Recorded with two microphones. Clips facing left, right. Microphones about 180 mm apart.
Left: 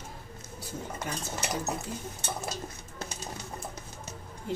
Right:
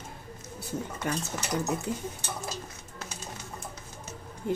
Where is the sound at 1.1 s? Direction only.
65° right (ahead or behind).